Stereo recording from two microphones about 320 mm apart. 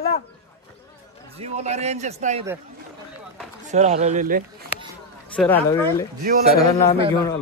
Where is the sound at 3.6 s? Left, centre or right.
Right.